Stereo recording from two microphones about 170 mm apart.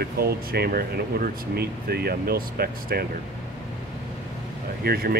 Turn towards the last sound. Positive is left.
turn(degrees=-65)  # may be behind; listen again after turning